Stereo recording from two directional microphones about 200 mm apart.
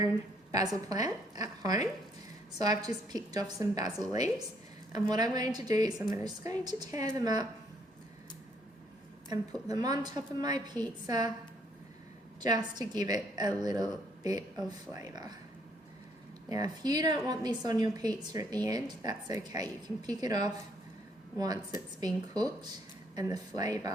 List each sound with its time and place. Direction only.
0.5 s a woman's voice: 20° right (ahead or behind)
5.9 s a woman's voice: 5° right (ahead or behind)
6.2 s a woman's voice: 20° right (ahead or behind)
9.3 s a woman's voice: 20° right (ahead or behind)
12.4 s a woman's voice: 20° right (ahead or behind)
16.5 s a woman's voice: 20° right (ahead or behind)